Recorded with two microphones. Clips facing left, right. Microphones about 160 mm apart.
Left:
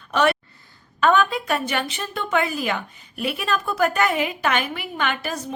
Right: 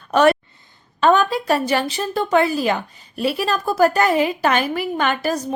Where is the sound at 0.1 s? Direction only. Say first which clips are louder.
Right 5 dB; 40° right (ahead or behind).